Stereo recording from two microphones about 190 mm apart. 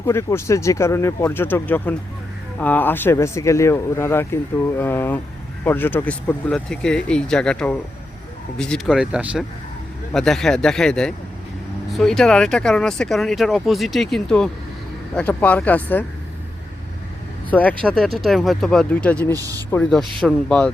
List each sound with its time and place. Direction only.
0.0 s speech: 15° left (ahead or behind)
17.5 s speech: 10° left (ahead or behind)
19.3 s speech: 20° right (ahead or behind)
19.7 s speech: centre (ahead or behind)